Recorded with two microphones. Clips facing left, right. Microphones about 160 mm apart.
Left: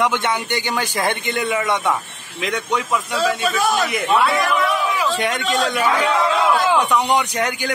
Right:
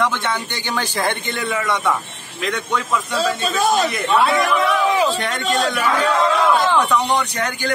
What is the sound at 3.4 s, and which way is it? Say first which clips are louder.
Speech: right 1 dB; 25° right (ahead or behind).